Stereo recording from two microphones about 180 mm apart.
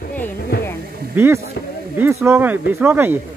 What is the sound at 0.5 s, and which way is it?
Music, 65° left (ahead or behind).